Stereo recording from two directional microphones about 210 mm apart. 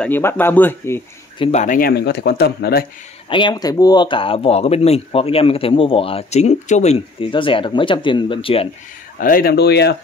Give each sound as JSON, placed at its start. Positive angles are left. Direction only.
{"t": 0.0, "sound": "speech", "side_deg": 10}
{"t": 1.4, "sound": "speech", "side_deg": 35}
{"t": 3.3, "sound": "speech", "side_deg": 20}
{"t": 9.2, "sound": "speech", "side_deg": 45}